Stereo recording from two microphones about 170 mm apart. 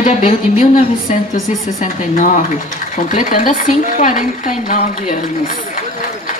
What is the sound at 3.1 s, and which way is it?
A woman's voice, 50° left (ahead or behind).